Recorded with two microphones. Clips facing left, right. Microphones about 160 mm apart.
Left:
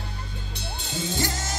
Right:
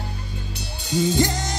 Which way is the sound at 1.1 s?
20° right (ahead or behind).